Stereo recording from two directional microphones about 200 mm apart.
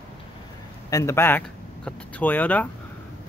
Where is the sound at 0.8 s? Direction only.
15° left (ahead or behind).